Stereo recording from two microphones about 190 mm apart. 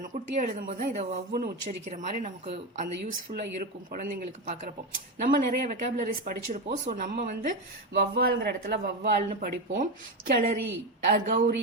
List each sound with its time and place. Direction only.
0.0 s speech: 40° right (ahead or behind)
3.3 s a woman's voice: 50° right (ahead or behind)
5.2 s a woman's voice: 50° right (ahead or behind)
9.1 s a woman's voice: 45° right (ahead or behind)